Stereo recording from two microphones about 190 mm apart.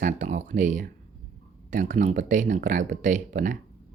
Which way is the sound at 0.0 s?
40° right (ahead or behind).